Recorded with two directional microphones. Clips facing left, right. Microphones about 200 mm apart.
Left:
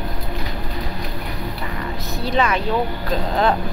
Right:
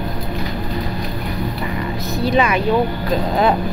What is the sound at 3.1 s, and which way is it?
Speech, 10° right (ahead or behind).